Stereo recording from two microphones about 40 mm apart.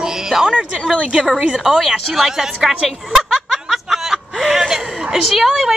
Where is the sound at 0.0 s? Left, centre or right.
Centre.